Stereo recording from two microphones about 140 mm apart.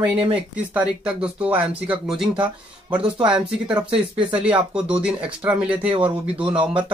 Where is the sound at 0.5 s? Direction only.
10° right (ahead or behind).